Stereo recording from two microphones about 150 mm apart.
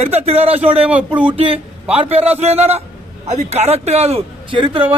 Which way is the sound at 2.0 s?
45° right (ahead or behind).